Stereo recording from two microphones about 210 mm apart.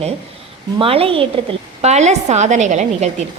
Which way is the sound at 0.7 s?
25° right (ahead or behind).